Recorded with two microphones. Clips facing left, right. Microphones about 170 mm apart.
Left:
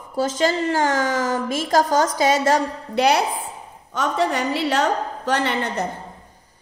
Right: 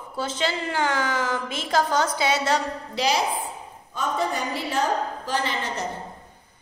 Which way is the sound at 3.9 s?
80° left.